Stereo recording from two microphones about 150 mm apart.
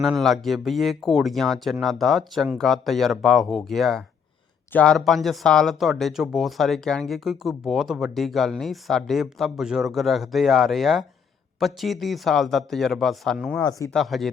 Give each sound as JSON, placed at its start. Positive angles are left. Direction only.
{"t": 0.0, "sound": "speech", "side_deg": 0}
{"t": 13.7, "sound": "speech", "side_deg": 20}
{"t": 13.9, "sound": "speech", "side_deg": 0}